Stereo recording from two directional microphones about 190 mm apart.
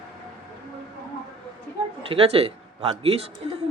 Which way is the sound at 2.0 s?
30° right (ahead or behind).